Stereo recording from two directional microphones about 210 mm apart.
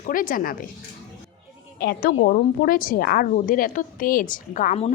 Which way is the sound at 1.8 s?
45° left (ahead or behind).